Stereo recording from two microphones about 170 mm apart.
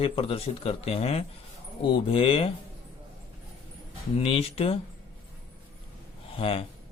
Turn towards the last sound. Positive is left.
turn(degrees=35)  # may be behind; listen again after turning